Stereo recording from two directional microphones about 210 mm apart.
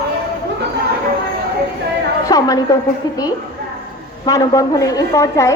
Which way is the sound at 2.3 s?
15° left (ahead or behind).